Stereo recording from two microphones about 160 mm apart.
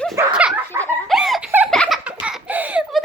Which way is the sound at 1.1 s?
Centre (ahead or behind).